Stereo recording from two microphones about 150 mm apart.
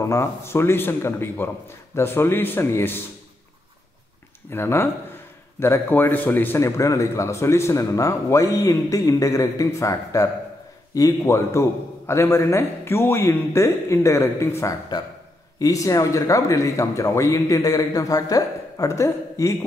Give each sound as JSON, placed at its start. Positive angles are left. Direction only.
{"t": 0.0, "sound": "speech", "side_deg": 20}
{"t": 4.5, "sound": "a man's voice", "side_deg": 15}